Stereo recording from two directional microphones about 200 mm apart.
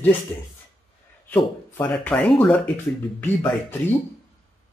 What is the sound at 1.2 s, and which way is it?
Speech, 10° left (ahead or behind).